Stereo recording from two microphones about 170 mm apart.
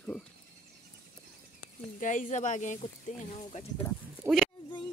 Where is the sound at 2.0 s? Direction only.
50° left (ahead or behind).